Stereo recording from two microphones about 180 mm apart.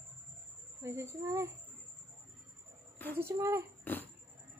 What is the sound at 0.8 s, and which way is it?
Speech, 15° right (ahead or behind).